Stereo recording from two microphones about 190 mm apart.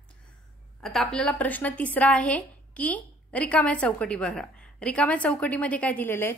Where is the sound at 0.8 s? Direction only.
Centre (ahead or behind).